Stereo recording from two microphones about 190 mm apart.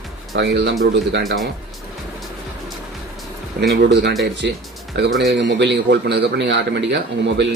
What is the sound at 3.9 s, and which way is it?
A man's voice, 65° right (ahead or behind).